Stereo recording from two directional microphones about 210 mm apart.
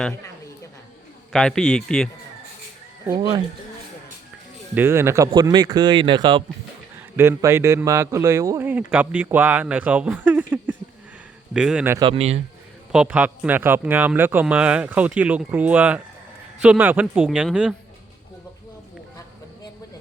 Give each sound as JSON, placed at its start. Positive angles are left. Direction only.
{"t": 1.3, "sound": "a man's voice", "side_deg": 5}
{"t": 4.7, "sound": "speech", "side_deg": -10}
{"t": 7.2, "sound": "a man's voice", "side_deg": -10}
{"t": 11.9, "sound": "speech", "side_deg": -25}
{"t": 12.9, "sound": "a man's voice", "side_deg": -5}